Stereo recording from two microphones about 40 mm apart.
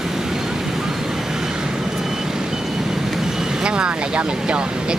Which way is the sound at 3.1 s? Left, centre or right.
Centre.